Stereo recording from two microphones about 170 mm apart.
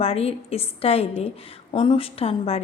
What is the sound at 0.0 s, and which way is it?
A woman's voice, 35° left (ahead or behind).